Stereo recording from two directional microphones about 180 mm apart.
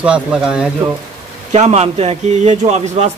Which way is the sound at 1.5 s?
35° right (ahead or behind).